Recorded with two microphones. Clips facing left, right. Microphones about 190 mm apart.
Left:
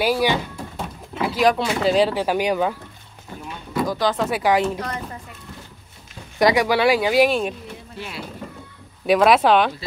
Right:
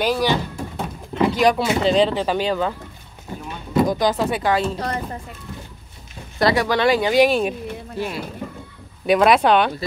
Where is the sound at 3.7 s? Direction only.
20° right (ahead or behind).